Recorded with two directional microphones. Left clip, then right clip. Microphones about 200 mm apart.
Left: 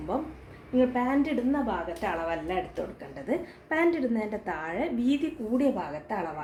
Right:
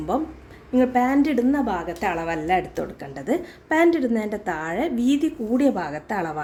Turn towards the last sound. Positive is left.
turn(degrees=-45)  # may be behind; listen again after turning